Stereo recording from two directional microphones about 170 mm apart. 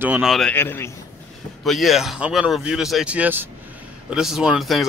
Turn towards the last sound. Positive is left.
turn(degrees=0)  # may be behind; listen again after turning